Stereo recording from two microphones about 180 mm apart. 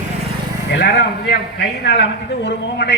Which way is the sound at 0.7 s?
65° left (ahead or behind).